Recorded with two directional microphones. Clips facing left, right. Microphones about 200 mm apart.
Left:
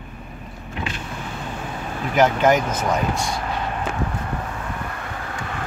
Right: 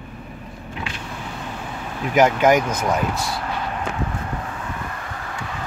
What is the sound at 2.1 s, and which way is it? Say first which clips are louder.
Speech: right 1 dB; 10° right (ahead or behind).